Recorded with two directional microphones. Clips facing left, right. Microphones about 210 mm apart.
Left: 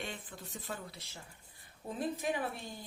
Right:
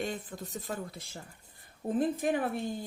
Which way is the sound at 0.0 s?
40° right (ahead or behind).